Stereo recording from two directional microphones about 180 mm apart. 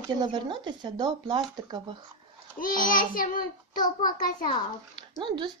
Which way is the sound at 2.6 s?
50° left (ahead or behind).